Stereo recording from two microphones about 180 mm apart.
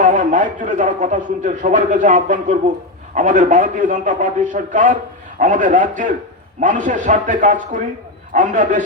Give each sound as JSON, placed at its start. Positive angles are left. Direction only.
{"t": 0.0, "sound": "a man's voice", "side_deg": -45}